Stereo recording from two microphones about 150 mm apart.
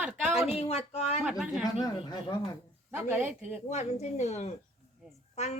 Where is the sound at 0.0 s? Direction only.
10° right (ahead or behind).